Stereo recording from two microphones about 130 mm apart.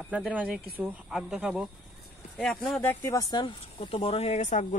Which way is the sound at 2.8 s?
20° left (ahead or behind).